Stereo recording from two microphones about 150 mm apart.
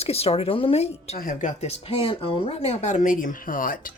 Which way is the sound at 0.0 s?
40° left (ahead or behind).